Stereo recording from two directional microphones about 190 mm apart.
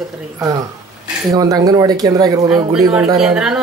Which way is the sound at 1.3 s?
20° right (ahead or behind).